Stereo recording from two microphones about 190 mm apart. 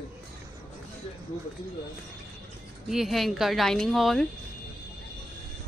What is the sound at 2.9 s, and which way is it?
Speech, centre (ahead or behind).